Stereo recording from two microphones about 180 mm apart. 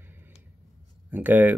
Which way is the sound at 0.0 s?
10° right (ahead or behind).